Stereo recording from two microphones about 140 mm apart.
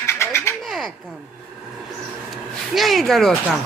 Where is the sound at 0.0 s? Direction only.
20° left (ahead or behind).